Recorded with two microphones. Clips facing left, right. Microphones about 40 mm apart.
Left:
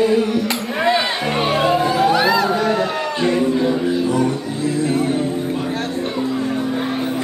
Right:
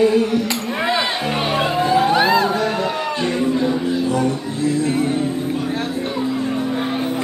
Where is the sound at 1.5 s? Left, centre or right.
Centre.